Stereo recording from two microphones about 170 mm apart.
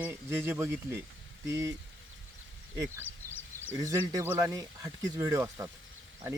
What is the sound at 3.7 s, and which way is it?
Speech, 15° right (ahead or behind).